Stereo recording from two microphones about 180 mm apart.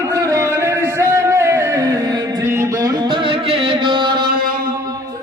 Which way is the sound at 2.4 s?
15° right (ahead or behind).